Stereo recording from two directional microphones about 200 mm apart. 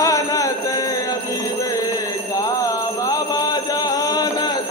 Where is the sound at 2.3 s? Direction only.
15° left (ahead or behind).